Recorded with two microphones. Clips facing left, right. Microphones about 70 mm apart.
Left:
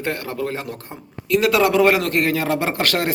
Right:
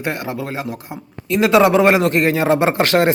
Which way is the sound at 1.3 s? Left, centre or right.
Right.